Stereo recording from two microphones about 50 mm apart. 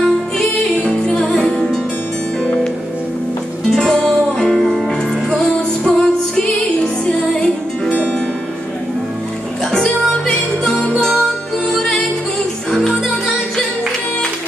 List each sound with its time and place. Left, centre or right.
0.8 s music: centre
2.4 s music: centre
3.7 s music: centre
7.9 s music: left
9.7 s music: centre